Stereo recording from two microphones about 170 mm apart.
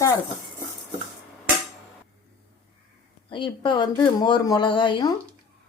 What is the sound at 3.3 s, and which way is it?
Speech, 25° left (ahead or behind).